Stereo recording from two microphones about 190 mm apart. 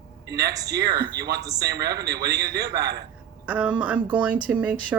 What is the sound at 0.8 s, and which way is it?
A man's voice, 55° right (ahead or behind).